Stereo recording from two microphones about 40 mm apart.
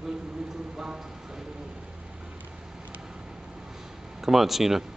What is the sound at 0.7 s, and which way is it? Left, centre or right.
Clip-clop, centre.